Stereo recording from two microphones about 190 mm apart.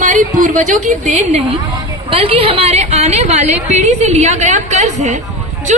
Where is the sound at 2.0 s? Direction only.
30° right (ahead or behind).